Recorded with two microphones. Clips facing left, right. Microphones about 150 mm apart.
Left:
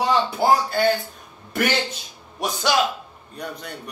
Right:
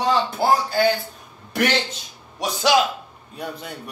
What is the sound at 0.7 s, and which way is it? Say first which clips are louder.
Speech: right 1 dB; centre (ahead or behind).